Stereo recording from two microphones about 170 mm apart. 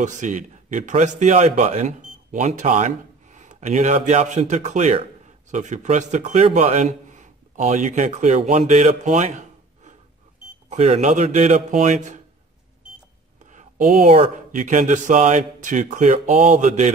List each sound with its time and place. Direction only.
0.0 s a man's voice: 45° right (ahead or behind)
13.5 s a sound: 45° right (ahead or behind)
13.9 s speech: 45° right (ahead or behind)